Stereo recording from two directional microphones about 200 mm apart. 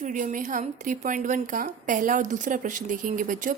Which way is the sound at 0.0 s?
40° right (ahead or behind).